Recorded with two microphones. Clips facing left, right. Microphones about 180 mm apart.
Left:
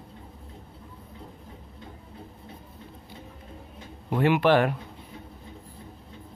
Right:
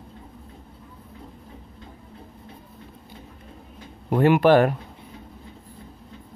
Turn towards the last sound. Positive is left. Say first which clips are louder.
# right 5 dB
turn(degrees=-45)  # may be behind; listen again after turning